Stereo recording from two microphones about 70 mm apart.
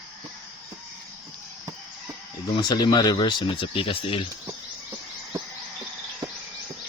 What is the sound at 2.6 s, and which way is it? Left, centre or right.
Speech, left.